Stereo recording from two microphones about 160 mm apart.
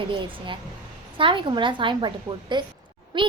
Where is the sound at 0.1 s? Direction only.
30° right (ahead or behind).